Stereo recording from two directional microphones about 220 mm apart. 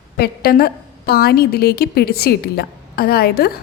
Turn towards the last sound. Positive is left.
turn(degrees=45)  # may be behind; listen again after turning